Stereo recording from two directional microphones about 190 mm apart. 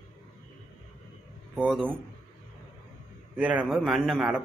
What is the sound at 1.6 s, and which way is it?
Speech, centre (ahead or behind).